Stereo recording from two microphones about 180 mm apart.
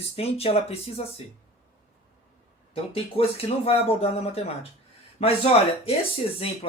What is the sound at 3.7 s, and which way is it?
Speech, 35° left (ahead or behind).